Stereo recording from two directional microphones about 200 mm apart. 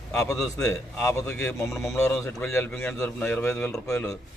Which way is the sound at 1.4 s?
Centre (ahead or behind).